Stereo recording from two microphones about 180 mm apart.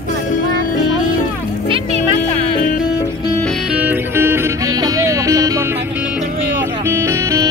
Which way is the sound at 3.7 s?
10° right (ahead or behind).